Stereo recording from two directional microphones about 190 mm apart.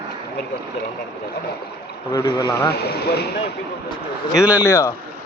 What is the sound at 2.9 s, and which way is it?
Speech, 60° left (ahead or behind).